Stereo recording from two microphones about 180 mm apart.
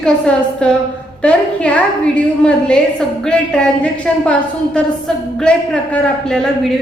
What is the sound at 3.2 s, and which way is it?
A woman's voice, 5° left (ahead or behind).